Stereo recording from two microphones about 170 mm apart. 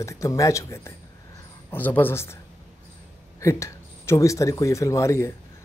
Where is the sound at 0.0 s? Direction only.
20° left (ahead or behind).